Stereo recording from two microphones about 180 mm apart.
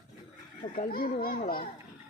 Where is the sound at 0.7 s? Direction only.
55° left (ahead or behind).